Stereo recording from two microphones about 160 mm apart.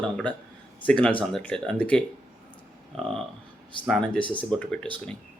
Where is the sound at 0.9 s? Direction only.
10° left (ahead or behind).